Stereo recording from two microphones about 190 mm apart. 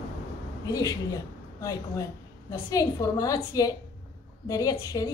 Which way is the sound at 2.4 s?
20° left (ahead or behind).